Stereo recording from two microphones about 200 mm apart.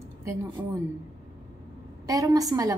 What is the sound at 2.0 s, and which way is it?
Speech, 15° right (ahead or behind).